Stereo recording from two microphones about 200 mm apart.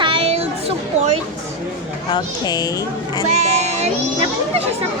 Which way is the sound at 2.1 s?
20° left (ahead or behind).